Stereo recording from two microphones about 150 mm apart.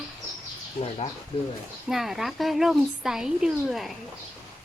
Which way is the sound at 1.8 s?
Centre (ahead or behind).